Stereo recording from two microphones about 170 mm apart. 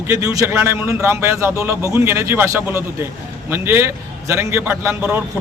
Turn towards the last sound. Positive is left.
turn(degrees=-10)  # may be behind; listen again after turning